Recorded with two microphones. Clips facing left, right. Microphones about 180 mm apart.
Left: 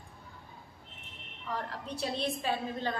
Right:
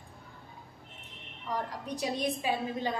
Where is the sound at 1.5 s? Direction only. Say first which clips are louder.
Right 2 dB; 15° right (ahead or behind).